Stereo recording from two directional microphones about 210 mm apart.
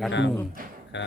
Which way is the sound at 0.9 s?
60° left (ahead or behind).